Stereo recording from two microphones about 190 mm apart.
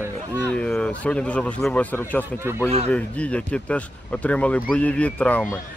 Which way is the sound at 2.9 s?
5° left (ahead or behind).